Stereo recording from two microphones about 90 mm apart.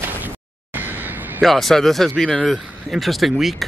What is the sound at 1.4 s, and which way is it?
Speech, centre (ahead or behind).